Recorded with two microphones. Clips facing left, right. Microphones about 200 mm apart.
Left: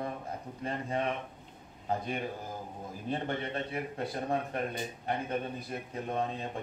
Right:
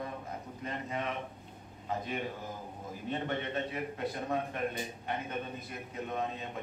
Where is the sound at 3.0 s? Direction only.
30° left (ahead or behind).